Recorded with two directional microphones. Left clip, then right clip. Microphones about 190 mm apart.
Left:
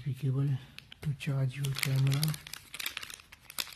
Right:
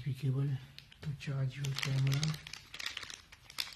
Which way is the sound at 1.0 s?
35° left (ahead or behind).